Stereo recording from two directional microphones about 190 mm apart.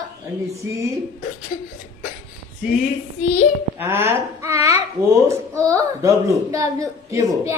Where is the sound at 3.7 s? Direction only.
10° right (ahead or behind).